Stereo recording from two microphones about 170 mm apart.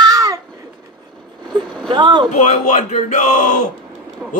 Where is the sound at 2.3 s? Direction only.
45° left (ahead or behind).